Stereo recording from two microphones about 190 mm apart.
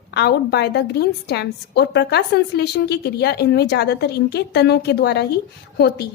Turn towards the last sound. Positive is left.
turn(degrees=60)  # may be behind; listen again after turning